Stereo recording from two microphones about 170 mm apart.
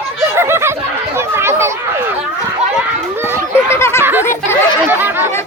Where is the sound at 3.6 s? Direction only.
15° left (ahead or behind).